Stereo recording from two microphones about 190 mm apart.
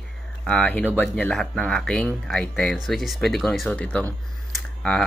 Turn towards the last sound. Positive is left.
turn(degrees=5)  # may be behind; listen again after turning